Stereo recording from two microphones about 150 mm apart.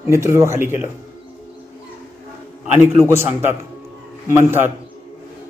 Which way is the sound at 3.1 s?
15° right (ahead or behind).